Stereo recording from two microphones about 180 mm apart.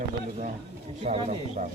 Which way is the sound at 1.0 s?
35° right (ahead or behind).